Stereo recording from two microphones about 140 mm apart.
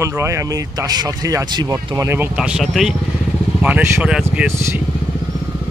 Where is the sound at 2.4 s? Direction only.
5° right (ahead or behind).